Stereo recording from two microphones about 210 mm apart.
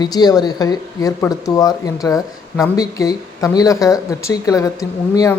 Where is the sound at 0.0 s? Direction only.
20° left (ahead or behind).